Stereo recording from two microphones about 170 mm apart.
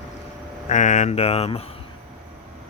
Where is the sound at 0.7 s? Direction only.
45° left (ahead or behind).